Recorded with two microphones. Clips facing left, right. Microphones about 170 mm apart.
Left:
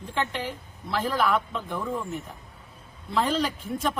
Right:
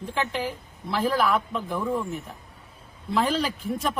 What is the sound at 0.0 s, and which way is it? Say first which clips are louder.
Speech: right 2 dB; centre (ahead or behind).